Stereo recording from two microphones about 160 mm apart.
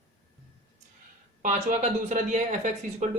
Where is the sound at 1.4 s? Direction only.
50° right (ahead or behind).